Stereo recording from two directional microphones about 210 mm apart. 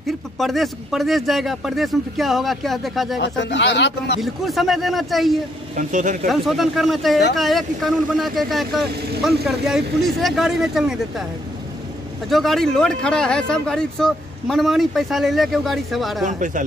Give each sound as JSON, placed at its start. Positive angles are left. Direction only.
{"t": 0.4, "sound": "speech", "side_deg": 0}
{"t": 3.2, "sound": "a man's voice", "side_deg": 55}
{"t": 4.2, "sound": "speech", "side_deg": 0}
{"t": 5.8, "sound": "speech", "side_deg": -35}
{"t": 6.2, "sound": "speech", "side_deg": 0}
{"t": 12.3, "sound": "speech", "side_deg": 0}
{"t": 16.3, "sound": "speech", "side_deg": -35}